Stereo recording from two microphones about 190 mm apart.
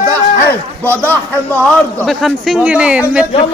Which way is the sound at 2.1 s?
Centre (ahead or behind).